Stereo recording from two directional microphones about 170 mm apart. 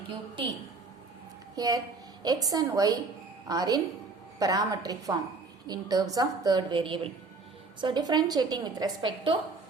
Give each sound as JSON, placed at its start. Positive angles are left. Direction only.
{"t": 1.5, "sound": "a woman's voice", "side_deg": -20}